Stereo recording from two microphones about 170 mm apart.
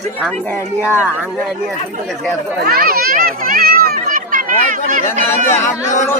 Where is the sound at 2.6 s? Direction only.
60° right (ahead or behind).